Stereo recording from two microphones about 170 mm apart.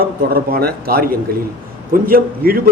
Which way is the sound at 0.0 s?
60° right (ahead or behind).